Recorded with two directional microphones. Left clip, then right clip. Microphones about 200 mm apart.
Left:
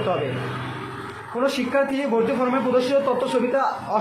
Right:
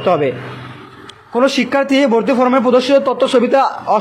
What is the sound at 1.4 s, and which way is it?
A man's voice, 45° right (ahead or behind).